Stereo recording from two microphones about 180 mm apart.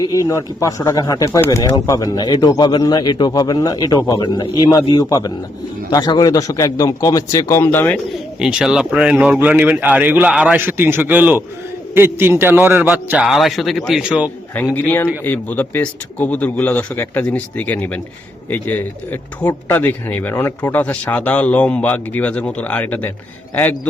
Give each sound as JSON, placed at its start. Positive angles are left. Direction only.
{"t": 0.0, "sound": "speech", "side_deg": 20}
{"t": 8.4, "sound": "speech", "side_deg": -5}
{"t": 14.5, "sound": "a man's voice", "side_deg": 10}